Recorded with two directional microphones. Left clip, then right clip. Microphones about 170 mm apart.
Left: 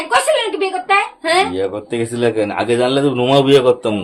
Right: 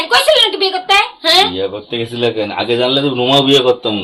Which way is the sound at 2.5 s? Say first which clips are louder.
Right 1 dB; 25° left (ahead or behind).